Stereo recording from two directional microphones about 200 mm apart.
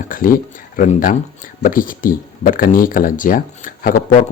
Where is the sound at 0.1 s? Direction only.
45° left (ahead or behind).